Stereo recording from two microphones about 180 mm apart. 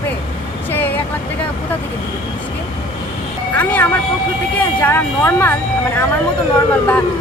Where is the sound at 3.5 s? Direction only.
10° left (ahead or behind).